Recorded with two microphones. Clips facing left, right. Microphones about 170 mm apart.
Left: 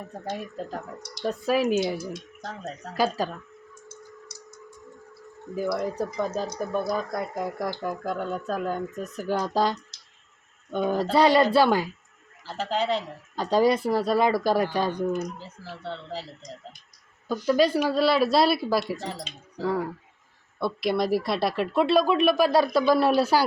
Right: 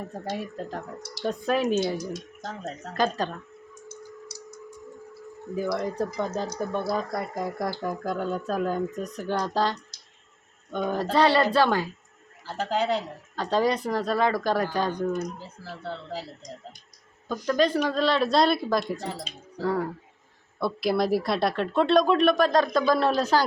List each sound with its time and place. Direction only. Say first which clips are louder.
0.3 s speech: right 1 dB; centre (ahead or behind)
2.4 s speech: right 1 dB; 5° right (ahead or behind)
2.9 s speech: left 1 dB; 5° left (ahead or behind)
3.8 s tick-tock: right 5 dB; 40° right (ahead or behind)
5.7 s speech: even; 5° left (ahead or behind)
12.7 s speech: even; 10° right (ahead or behind)
13.3 s speech: left 3 dB; 10° left (ahead or behind)
15.8 s speech: even; 10° right (ahead or behind)
17.4 s speech: left 2 dB; 10° left (ahead or behind)